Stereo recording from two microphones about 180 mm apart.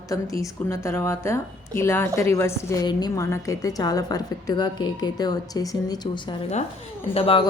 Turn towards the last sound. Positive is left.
turn(degrees=30)  # may be behind; listen again after turning